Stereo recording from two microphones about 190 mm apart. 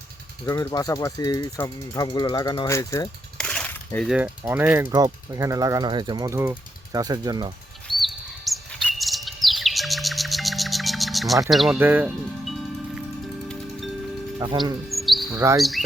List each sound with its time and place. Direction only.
0.4 s speech: 15° left (ahead or behind)
3.3 s a sound: 5° left (ahead or behind)
4.1 s speech: 10° right (ahead or behind)
7.9 s chirp: centre (ahead or behind)
11.5 s speech: centre (ahead or behind)
14.3 s speech: 25° right (ahead or behind)
14.8 s cricket: centre (ahead or behind)
15.4 s speech: 15° right (ahead or behind)